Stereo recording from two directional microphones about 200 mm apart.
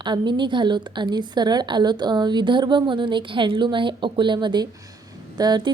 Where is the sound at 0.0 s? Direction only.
25° right (ahead or behind).